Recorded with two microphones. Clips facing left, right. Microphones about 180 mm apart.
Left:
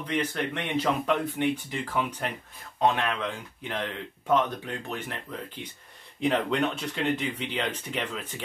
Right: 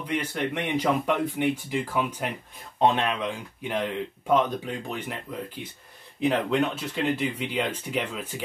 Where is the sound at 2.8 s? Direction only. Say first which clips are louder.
Right 2 dB; 20° right (ahead or behind).